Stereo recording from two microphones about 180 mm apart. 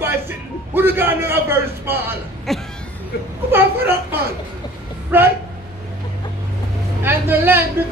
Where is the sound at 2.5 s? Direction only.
Centre (ahead or behind).